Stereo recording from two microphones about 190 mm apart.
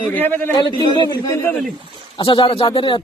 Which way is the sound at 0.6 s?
25° left (ahead or behind).